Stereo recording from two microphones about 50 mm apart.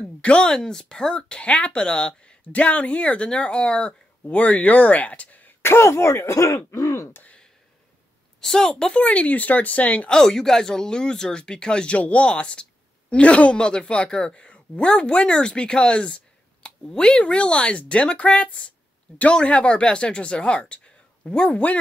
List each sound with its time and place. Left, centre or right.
0.2 s speech: centre
2.4 s speech: left
5.6 s speech: left
8.4 s speech: centre; by 10.0 s left
10.0 s speech: centre; by 21.7 s left